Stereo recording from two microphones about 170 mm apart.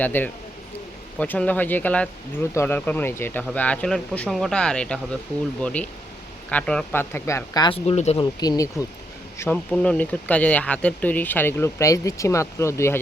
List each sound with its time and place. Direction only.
0.0 s speech: 10° left (ahead or behind); by 8.2 s 40° left (ahead or behind)
8.2 s speech: 25° left (ahead or behind)
9.4 s speech: 10° left (ahead or behind)